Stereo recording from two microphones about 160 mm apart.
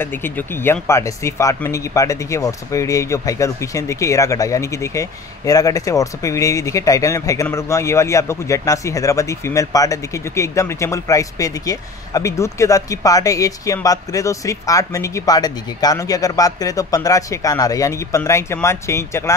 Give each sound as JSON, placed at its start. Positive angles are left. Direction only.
{"t": 0.0, "sound": "a man's voice", "side_deg": 10}